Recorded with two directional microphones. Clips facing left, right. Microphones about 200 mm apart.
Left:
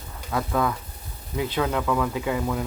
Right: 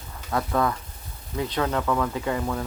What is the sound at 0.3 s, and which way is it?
Speech, centre (ahead or behind).